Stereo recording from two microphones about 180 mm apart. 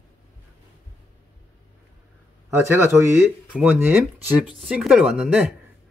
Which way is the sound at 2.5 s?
15° right (ahead or behind).